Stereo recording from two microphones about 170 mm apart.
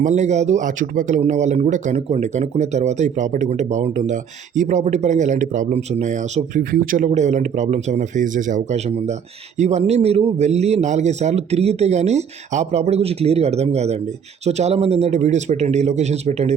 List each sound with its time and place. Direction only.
0.0 s a man's voice: 45° right (ahead or behind)